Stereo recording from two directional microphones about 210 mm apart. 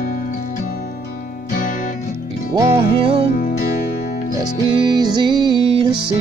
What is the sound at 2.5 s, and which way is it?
Music, 25° right (ahead or behind).